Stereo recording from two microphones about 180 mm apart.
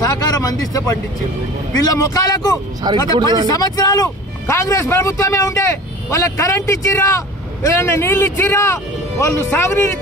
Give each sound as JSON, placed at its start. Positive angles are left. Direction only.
{"t": 0.0, "sound": "speech", "side_deg": 20}
{"t": 2.8, "sound": "speech", "side_deg": -25}
{"t": 3.4, "sound": "a man's voice", "side_deg": 20}